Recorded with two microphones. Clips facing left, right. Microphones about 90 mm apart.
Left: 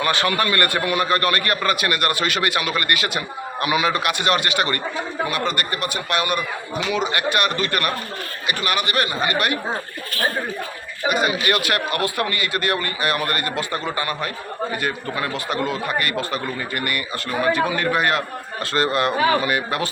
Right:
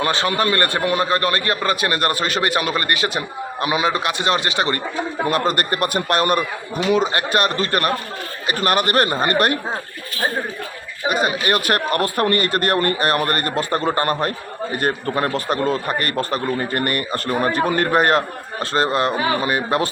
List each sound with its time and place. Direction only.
0.0 s a man's voice: 25° right (ahead or behind)
5.3 s a man's voice: 40° right (ahead or behind)
11.1 s speech: 35° right (ahead or behind)
18.6 s a man's voice: 30° right (ahead or behind)